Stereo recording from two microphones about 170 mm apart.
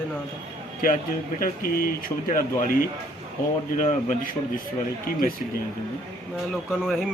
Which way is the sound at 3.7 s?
45° left (ahead or behind).